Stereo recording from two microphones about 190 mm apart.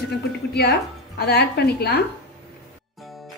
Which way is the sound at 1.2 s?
60° left (ahead or behind).